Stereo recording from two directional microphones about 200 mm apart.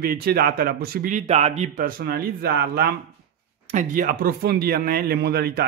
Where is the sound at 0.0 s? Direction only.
50° right (ahead or behind).